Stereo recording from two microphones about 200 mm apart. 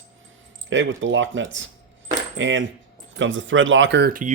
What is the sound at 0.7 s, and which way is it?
Speech, 70° right (ahead or behind).